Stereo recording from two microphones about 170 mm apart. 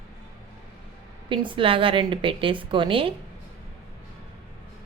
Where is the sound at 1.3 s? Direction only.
30° right (ahead or behind).